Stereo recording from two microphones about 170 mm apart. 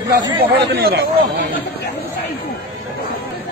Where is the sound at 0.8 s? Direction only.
65° right (ahead or behind).